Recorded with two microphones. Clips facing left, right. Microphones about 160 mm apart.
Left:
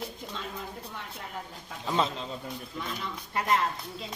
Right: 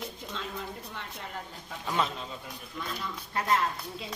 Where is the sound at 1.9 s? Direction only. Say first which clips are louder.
Left 2 dB; 30° left (ahead or behind).